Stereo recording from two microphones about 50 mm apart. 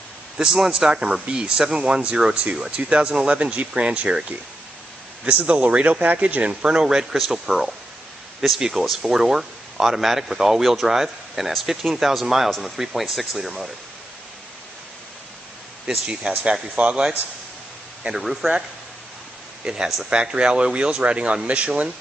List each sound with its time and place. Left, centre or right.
0.4 s speech: centre
5.2 s speech: right; by 7.7 s centre
8.7 s speech: centre
12.7 s speech: centre
16.1 s speech: centre
16.7 s speech: right
18.1 s speech: centre
19.6 s speech: centre